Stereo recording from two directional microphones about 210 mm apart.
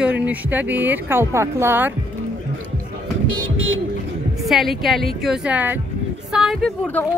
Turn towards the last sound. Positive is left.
turn(degrees=5)  # may be behind; listen again after turning